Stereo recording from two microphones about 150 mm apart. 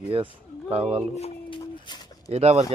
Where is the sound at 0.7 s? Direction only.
40° right (ahead or behind).